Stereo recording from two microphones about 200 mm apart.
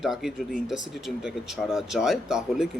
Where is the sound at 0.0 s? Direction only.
Centre (ahead or behind).